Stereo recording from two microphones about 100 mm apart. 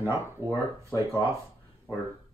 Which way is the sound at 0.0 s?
25° left (ahead or behind).